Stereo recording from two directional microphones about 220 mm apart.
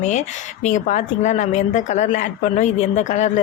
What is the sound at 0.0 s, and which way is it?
Speech, 35° left (ahead or behind).